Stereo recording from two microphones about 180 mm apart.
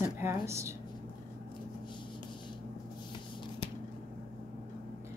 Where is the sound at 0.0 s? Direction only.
15° right (ahead or behind).